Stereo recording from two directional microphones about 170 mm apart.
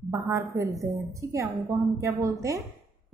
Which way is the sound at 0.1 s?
20° right (ahead or behind).